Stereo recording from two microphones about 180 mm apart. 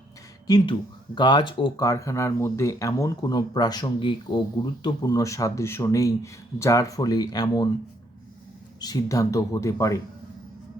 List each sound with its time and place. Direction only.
0.4 s speech: 25° left (ahead or behind)
8.8 s speech: 20° left (ahead or behind)